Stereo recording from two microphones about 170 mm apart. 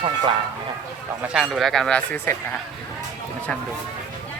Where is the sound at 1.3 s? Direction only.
Centre (ahead or behind).